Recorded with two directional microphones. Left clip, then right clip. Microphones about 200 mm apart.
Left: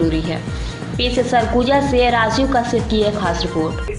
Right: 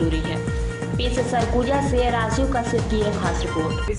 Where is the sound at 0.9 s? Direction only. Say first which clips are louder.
Left 7 dB; 5° right (ahead or behind).